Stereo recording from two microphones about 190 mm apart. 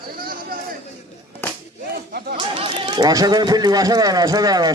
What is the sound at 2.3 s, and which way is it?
Speech, 30° right (ahead or behind).